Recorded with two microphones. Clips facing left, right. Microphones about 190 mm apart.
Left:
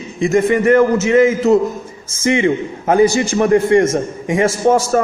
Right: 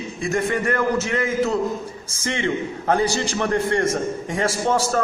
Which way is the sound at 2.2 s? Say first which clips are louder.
Left 9 dB; 15° left (ahead or behind).